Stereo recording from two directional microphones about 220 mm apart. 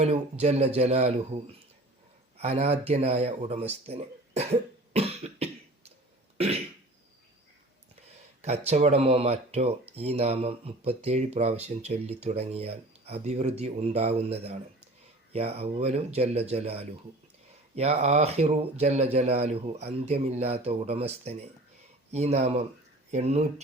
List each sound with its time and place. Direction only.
0.0 s speech: 30° right (ahead or behind)
2.4 s speech: 30° right (ahead or behind)
6.3 s cough: 25° right (ahead or behind)
8.4 s speech: 30° right (ahead or behind)